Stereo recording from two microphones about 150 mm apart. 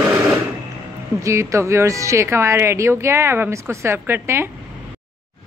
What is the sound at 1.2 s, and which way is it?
Speech, 20° right (ahead or behind).